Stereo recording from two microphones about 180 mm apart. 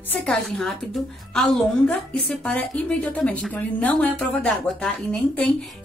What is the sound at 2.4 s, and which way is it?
A woman's voice, 5° left (ahead or behind).